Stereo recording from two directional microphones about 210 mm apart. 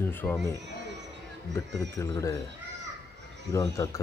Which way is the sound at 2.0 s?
15° left (ahead or behind).